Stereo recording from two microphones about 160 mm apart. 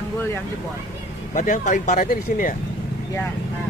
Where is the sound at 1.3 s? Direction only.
55° left (ahead or behind).